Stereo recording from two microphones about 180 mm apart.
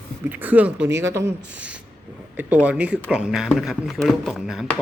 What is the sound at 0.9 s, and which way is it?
Speech, 85° right.